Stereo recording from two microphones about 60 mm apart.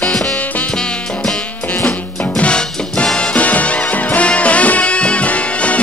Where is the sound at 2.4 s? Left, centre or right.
Centre.